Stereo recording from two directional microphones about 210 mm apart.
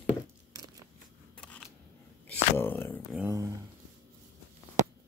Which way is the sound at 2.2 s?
10° left (ahead or behind).